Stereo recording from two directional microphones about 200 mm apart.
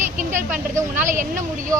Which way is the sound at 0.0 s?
40° right (ahead or behind).